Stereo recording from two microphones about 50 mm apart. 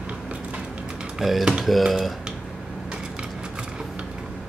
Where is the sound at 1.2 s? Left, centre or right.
Centre.